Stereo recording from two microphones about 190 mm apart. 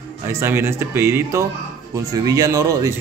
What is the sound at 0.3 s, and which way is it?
A man's voice, 15° right (ahead or behind).